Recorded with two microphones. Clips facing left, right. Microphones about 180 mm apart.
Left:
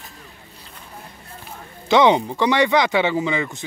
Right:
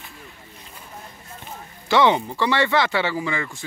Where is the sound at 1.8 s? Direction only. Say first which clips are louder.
Left 3 dB; 20° left (ahead or behind).